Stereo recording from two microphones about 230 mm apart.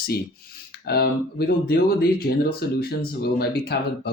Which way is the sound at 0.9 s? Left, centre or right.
Left.